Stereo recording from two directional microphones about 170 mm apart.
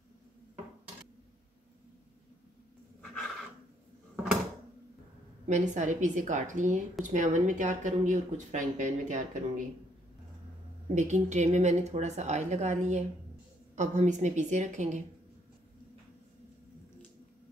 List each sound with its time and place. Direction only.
5.5 s a woman's voice: 45° right (ahead or behind)
11.0 s a woman's voice: 45° right (ahead or behind)